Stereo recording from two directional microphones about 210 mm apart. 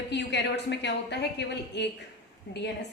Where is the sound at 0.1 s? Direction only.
55° left (ahead or behind).